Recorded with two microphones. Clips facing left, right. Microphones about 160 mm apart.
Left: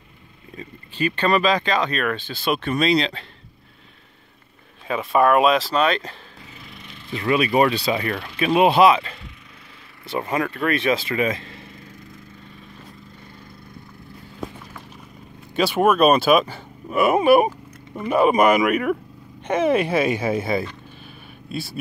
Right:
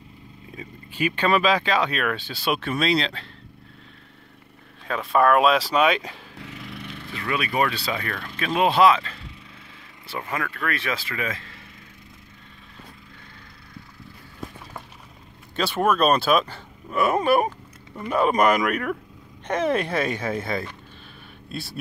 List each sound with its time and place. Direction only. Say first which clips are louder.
0.6 s speech: left 2 dB; 10° right (ahead or behind)
4.8 s speech: left 2 dB; 5° left (ahead or behind)
5.6 s speech: even; 10° right (ahead or behind)
6.3 s dog: right 5 dB; 75° right (ahead or behind)
7.1 s speech: left 8 dB; 20° left (ahead or behind)
15.5 s speech: left 4 dB; 10° left (ahead or behind)